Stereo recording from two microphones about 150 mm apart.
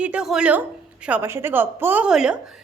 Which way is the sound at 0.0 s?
5° right (ahead or behind).